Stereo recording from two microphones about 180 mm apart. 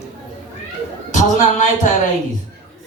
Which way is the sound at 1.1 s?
45° left (ahead or behind).